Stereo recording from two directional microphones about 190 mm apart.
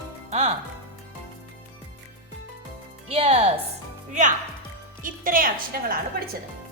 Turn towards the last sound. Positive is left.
turn(degrees=-50)  # may be behind; listen again after turning